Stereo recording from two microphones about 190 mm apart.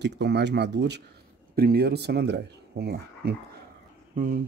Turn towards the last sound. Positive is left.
turn(degrees=-45)  # may be behind; listen again after turning